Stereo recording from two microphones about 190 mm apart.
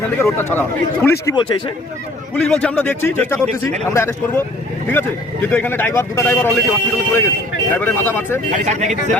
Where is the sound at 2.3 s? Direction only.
5° left (ahead or behind).